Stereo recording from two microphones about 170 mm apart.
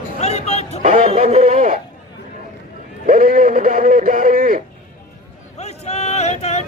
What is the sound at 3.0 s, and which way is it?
Speech, 55° right (ahead or behind).